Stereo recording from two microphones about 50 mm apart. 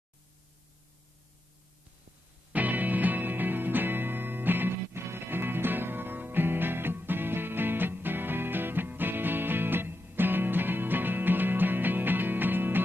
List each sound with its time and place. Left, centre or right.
2.5 s music: right